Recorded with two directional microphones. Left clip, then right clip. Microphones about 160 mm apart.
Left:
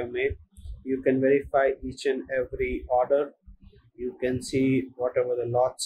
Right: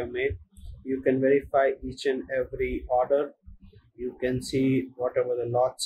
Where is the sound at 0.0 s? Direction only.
15° left (ahead or behind).